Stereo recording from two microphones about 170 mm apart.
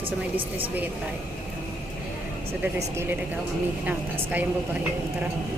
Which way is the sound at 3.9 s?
10° right (ahead or behind).